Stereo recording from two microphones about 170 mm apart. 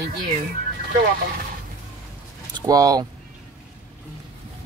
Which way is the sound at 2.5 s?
20° right (ahead or behind).